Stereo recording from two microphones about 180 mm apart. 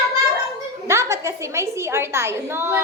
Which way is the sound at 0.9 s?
15° right (ahead or behind).